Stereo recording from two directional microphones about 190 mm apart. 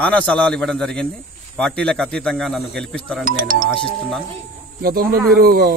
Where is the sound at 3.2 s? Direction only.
45° right (ahead or behind).